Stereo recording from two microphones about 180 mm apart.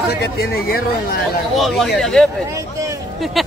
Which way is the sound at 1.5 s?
Centre (ahead or behind).